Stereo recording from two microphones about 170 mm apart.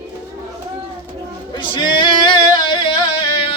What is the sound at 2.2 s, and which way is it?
Music, 25° left (ahead or behind).